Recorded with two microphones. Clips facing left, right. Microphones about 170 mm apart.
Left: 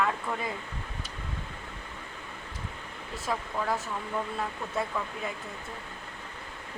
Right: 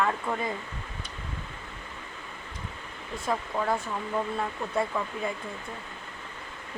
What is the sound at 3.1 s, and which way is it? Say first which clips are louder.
Speech: right 3 dB; 5° left (ahead or behind).